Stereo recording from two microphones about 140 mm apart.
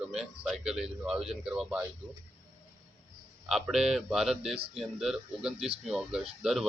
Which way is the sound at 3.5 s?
5° right (ahead or behind).